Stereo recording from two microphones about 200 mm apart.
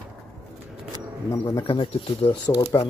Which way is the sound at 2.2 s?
15° left (ahead or behind).